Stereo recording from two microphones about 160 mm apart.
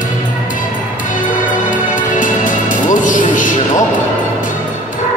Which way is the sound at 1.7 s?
55° left (ahead or behind).